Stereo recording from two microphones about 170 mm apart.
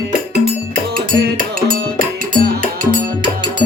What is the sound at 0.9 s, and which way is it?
Music, 55° right (ahead or behind).